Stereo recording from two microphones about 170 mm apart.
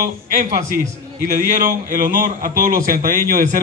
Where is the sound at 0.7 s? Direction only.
60° right (ahead or behind).